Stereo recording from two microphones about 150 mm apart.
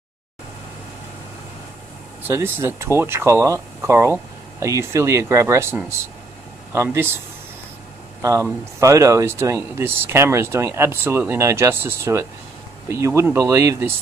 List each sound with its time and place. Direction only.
2.2 s speech: 15° right (ahead or behind)
8.2 s speech: 20° right (ahead or behind)